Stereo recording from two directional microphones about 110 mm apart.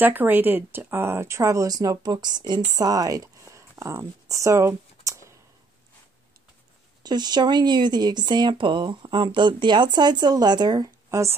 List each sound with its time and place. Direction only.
0.0 s speech: 15° right (ahead or behind)
7.0 s speech: 40° right (ahead or behind)
11.1 s speech: 25° right (ahead or behind)